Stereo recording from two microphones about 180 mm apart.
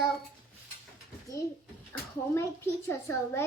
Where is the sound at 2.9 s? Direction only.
15° left (ahead or behind).